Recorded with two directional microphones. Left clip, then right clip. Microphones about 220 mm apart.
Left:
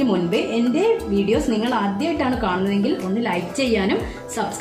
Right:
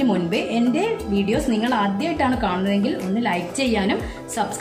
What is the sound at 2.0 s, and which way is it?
A woman's voice, 15° right (ahead or behind).